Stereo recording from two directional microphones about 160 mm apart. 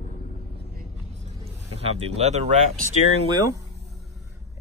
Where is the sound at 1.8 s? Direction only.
40° right (ahead or behind).